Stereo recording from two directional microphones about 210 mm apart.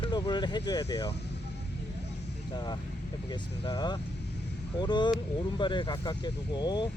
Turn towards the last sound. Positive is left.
turn(degrees=20)  # may be behind; listen again after turning